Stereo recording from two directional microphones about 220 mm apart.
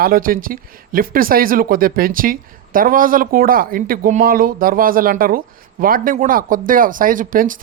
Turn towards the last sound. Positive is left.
turn(degrees=-35)  # may be behind; listen again after turning